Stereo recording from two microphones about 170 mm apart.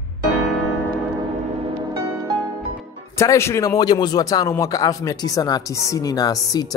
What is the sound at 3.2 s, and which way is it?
Speech, 15° left (ahead or behind).